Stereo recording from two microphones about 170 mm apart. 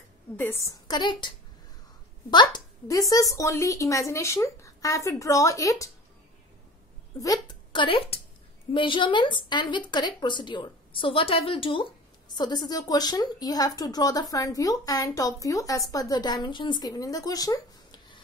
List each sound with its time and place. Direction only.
0.4 s a woman's voice: 15° left (ahead or behind)
0.8 s speech: 25° left (ahead or behind)
2.3 s speech: 20° left (ahead or behind)
7.4 s a woman's voice: 30° left (ahead or behind)